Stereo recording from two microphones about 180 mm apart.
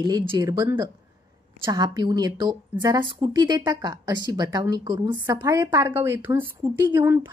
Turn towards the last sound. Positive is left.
turn(degrees=-15)  # may be behind; listen again after turning